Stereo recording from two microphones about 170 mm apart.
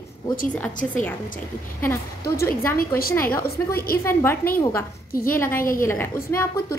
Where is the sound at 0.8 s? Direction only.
5° left (ahead or behind).